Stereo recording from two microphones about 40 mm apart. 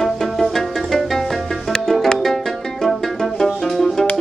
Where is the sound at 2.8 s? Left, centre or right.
Centre.